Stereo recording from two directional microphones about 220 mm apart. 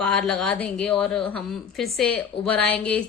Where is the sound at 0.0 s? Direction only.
5° left (ahead or behind).